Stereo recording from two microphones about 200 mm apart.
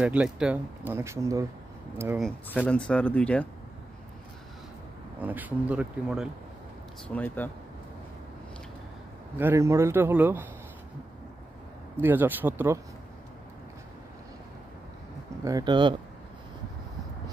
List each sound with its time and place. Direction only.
0.0 s speech: 5° right (ahead or behind)
2.1 s speech: 5° left (ahead or behind)
5.2 s speech: 10° right (ahead or behind)
7.1 s speech: 10° left (ahead or behind)
9.4 s speech: 15° right (ahead or behind)
12.0 s speech: 10° right (ahead or behind)
15.4 s speech: 20° right (ahead or behind)